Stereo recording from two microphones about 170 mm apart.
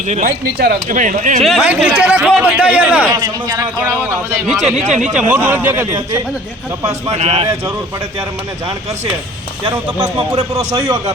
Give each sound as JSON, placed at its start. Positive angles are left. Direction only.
{"t": 0.1, "sound": "speech", "side_deg": -55}
{"t": 1.4, "sound": "a man's voice", "side_deg": 0}
{"t": 3.1, "sound": "a man's voice", "side_deg": -20}
{"t": 5.0, "sound": "speech", "side_deg": -10}
{"t": 7.1, "sound": "a man's voice", "side_deg": -40}
{"t": 9.6, "sound": "a man's voice", "side_deg": -25}